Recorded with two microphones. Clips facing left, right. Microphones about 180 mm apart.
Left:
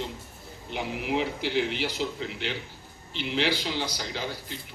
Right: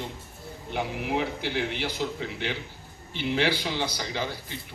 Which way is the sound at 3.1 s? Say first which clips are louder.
Right 2 dB; 55° right (ahead or behind).